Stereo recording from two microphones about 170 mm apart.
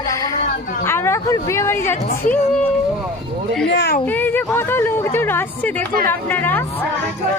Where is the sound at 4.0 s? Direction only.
10° left (ahead or behind).